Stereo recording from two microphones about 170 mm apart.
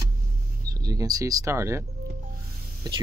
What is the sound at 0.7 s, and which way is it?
Speech, 20° right (ahead or behind).